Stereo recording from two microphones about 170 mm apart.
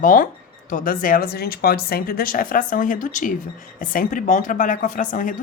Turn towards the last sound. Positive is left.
turn(degrees=50)  # may be behind; listen again after turning